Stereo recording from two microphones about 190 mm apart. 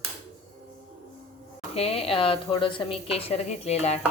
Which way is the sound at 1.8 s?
30° left (ahead or behind).